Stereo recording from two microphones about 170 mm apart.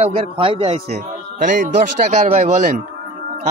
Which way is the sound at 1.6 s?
45° right (ahead or behind).